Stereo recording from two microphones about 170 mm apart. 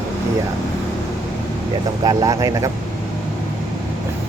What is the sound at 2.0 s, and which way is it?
Speech, 20° right (ahead or behind).